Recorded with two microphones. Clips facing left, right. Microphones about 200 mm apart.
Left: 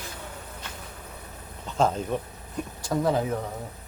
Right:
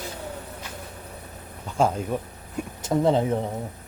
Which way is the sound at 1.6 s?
10° right (ahead or behind).